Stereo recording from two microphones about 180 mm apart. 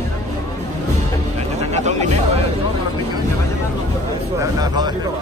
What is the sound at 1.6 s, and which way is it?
Music, 40° right (ahead or behind).